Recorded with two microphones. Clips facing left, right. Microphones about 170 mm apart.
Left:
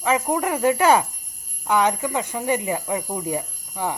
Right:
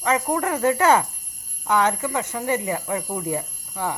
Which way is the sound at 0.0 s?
15° left (ahead or behind).